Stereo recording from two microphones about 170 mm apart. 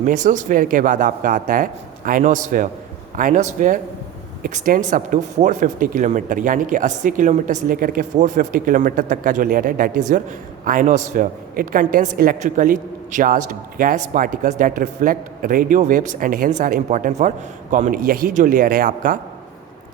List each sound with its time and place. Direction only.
0.0 s a woman's voice: 45° right (ahead or behind)